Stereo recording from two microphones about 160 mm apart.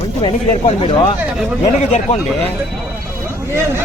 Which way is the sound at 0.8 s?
35° left (ahead or behind).